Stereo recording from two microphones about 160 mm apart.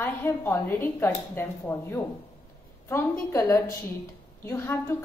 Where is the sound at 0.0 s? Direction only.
15° left (ahead or behind).